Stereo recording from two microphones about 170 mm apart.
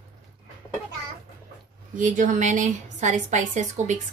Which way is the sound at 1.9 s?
50° right (ahead or behind).